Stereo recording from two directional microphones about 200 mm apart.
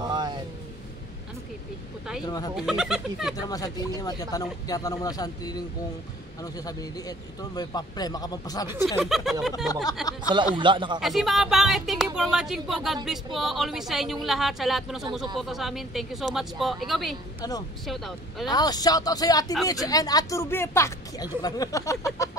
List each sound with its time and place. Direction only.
0.0 s a sound: 20° right (ahead or behind)
2.2 s speech: 20° left (ahead or behind)
2.5 s speech: 5° right (ahead or behind)
3.3 s speech: 20° left (ahead or behind)
8.8 s speech: centre (ahead or behind)
10.3 s speech: 25° right (ahead or behind)
11.0 s speech: centre (ahead or behind)
17.4 s a woman's voice: 20° left (ahead or behind)
17.8 s speech: centre (ahead or behind)
18.5 s speech: 20° left (ahead or behind)